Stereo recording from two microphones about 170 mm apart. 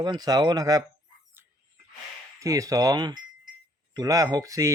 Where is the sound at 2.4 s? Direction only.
20° right (ahead or behind).